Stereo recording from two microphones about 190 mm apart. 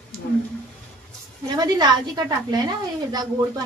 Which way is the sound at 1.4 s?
20° right (ahead or behind).